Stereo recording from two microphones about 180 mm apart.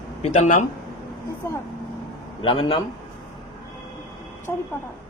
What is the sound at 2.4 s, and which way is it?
Speech, 30° left (ahead or behind).